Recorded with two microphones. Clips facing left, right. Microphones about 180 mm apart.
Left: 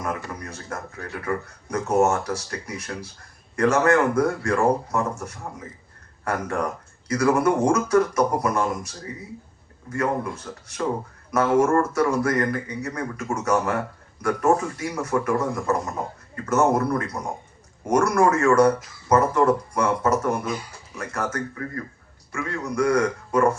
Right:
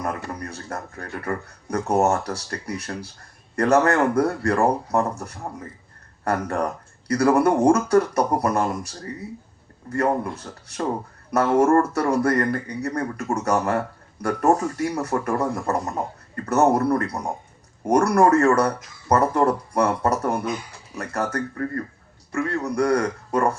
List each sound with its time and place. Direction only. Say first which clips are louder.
0.0 s a man's voice: right 1 dB; 35° right (ahead or behind)
22.3 s a man's voice: right 4 dB; 35° right (ahead or behind)